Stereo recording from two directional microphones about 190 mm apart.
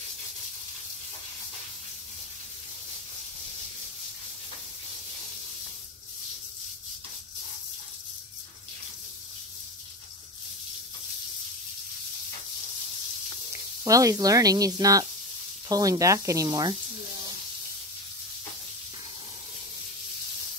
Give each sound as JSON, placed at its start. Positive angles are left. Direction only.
{"t": 13.8, "sound": "speech", "side_deg": -15}